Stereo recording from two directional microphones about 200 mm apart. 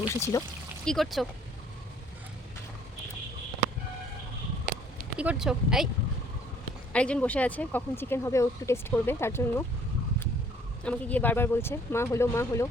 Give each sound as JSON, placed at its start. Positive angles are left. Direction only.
{"t": 0.0, "sound": "speech", "side_deg": 15}
{"t": 0.9, "sound": "speech", "side_deg": 0}
{"t": 5.1, "sound": "speech", "side_deg": -5}
{"t": 6.9, "sound": "speech", "side_deg": 5}
{"t": 10.8, "sound": "speech", "side_deg": 5}